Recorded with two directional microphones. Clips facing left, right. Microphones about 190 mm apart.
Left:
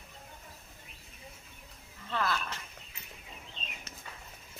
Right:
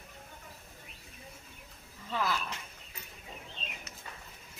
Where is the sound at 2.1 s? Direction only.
10° right (ahead or behind).